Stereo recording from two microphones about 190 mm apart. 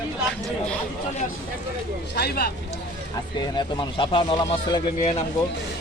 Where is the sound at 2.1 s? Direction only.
55° left (ahead or behind).